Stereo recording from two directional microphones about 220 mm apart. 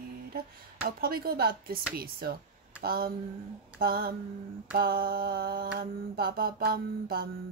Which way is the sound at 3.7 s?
45° right (ahead or behind).